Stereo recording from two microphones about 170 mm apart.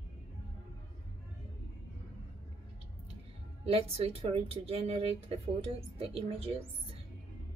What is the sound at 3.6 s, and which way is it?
Speech, 35° right (ahead or behind).